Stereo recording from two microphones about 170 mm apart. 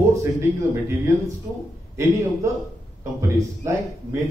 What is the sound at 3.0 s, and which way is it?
Speech, 20° right (ahead or behind).